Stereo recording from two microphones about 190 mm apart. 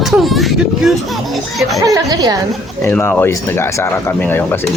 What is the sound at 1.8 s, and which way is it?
Speech, 20° right (ahead or behind).